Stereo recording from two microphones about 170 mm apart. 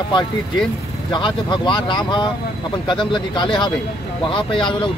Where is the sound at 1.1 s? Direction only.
25° left (ahead or behind).